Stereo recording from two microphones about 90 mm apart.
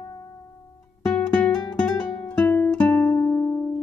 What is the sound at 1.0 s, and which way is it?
Music, 10° left (ahead or behind).